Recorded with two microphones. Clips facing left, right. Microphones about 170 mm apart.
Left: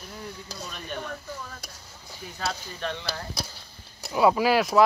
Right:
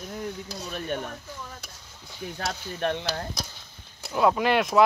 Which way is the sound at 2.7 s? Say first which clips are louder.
Right 5 dB; 55° right (ahead or behind).